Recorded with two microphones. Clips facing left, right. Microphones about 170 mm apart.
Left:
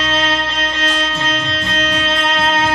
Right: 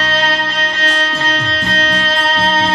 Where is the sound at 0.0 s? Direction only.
40° right (ahead or behind).